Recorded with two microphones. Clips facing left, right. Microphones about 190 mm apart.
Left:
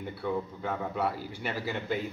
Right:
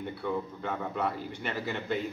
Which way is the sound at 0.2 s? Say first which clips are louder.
Left 2 dB; 5° left (ahead or behind).